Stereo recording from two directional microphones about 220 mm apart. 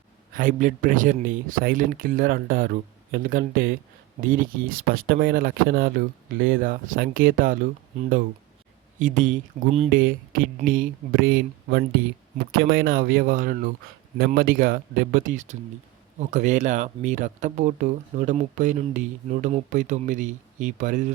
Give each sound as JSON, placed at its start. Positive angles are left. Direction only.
{"t": 0.3, "sound": "speech", "side_deg": -35}
{"t": 9.0, "sound": "speech", "side_deg": -35}